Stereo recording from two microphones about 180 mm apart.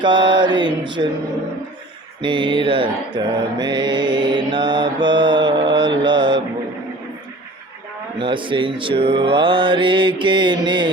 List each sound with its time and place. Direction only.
0.0 s mantra: 25° right (ahead or behind)
2.2 s mantra: 25° right (ahead or behind)
8.2 s mantra: 30° right (ahead or behind)